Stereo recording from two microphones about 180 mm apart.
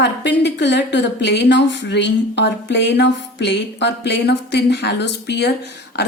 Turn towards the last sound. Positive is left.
turn(degrees=70)  # may be behind; listen again after turning